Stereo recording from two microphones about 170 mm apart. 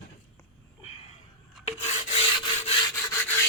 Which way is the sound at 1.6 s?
40° left (ahead or behind).